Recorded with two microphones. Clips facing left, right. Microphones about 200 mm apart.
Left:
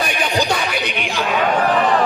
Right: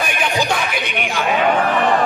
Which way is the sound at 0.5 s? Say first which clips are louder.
Even; 55° right (ahead or behind).